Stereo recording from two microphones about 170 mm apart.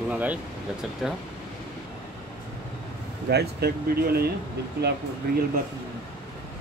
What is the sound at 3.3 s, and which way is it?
Speech, 70° right (ahead or behind).